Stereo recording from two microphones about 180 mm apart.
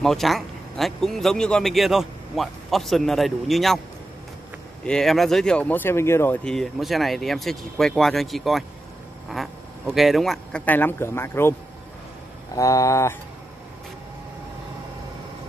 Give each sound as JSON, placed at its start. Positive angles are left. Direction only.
{"t": 0.0, "sound": "speech", "side_deg": 0}
{"t": 4.8, "sound": "a man's voice", "side_deg": 0}
{"t": 12.5, "sound": "a man's voice", "side_deg": 15}